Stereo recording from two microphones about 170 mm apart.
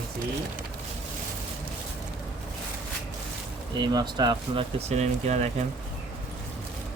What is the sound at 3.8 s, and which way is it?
Speech, 25° right (ahead or behind).